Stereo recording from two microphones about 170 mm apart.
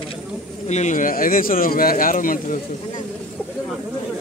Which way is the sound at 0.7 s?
45° left (ahead or behind).